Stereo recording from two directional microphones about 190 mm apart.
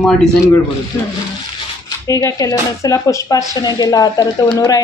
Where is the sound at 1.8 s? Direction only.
15° left (ahead or behind).